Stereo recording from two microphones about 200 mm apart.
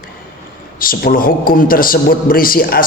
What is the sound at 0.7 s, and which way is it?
A man's voice, 45° left (ahead or behind).